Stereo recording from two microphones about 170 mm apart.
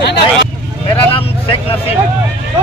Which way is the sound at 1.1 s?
35° left (ahead or behind).